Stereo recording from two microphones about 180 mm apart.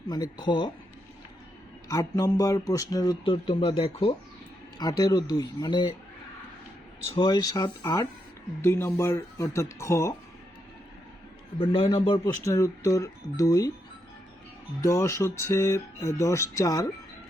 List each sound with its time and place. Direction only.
0.1 s speech: 25° left (ahead or behind)
1.9 s speech: 20° left (ahead or behind)
3.2 s speech: 30° left (ahead or behind)
7.2 s speech: 25° left (ahead or behind)
11.6 s speech: 30° left (ahead or behind)
14.8 s speech: 15° left (ahead or behind)